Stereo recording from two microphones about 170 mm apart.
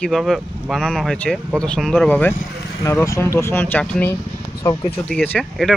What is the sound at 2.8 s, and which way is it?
Speech, 15° left (ahead or behind).